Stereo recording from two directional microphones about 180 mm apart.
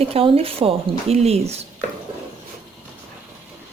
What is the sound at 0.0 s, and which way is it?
A woman's voice, 30° right (ahead or behind).